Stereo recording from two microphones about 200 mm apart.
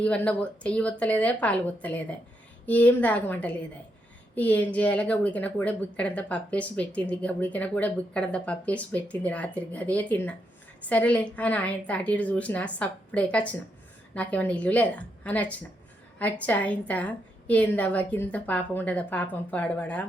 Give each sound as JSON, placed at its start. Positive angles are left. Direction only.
{"t": 0.0, "sound": "a woman's voice", "side_deg": 5}